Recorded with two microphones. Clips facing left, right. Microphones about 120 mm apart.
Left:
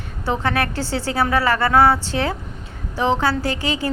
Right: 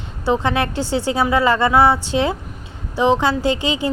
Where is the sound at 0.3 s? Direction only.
20° right (ahead or behind).